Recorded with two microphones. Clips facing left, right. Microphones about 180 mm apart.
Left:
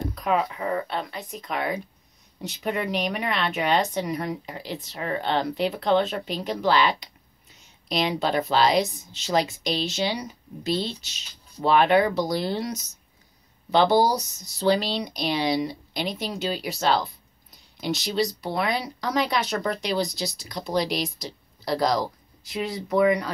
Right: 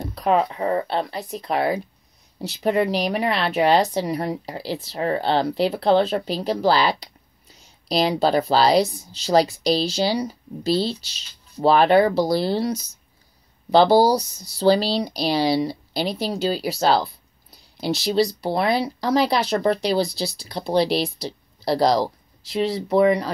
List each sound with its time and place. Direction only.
0.1 s speech: 35° right (ahead or behind)